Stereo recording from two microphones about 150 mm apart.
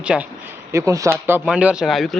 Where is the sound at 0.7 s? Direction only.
20° right (ahead or behind).